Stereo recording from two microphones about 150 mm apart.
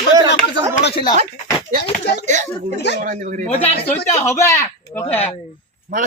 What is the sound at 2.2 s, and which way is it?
A man's voice, 55° right (ahead or behind).